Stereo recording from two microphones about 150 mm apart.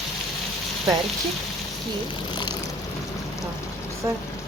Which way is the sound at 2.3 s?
30° left (ahead or behind).